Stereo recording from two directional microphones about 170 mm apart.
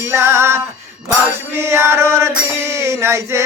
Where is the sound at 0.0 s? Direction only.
15° right (ahead or behind).